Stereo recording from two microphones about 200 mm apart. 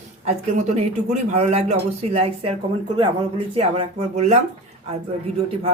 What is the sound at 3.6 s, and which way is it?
Speech, 30° right (ahead or behind).